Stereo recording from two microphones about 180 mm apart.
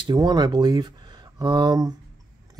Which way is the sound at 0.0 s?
25° right (ahead or behind).